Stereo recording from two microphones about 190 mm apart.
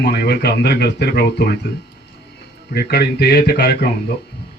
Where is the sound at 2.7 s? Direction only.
55° left (ahead or behind).